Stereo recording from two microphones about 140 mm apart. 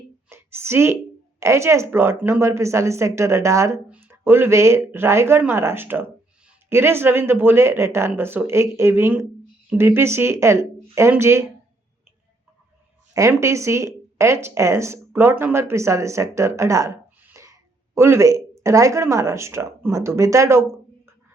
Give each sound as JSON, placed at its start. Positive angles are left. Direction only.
{"t": 0.3, "sound": "a sound", "side_deg": -15}
{"t": 1.4, "sound": "speech", "side_deg": -20}
{"t": 13.1, "sound": "speech", "side_deg": -20}